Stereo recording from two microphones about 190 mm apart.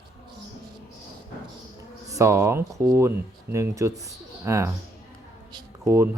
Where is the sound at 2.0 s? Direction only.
15° right (ahead or behind).